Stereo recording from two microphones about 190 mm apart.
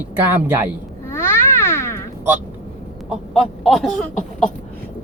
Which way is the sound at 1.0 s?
15° left (ahead or behind).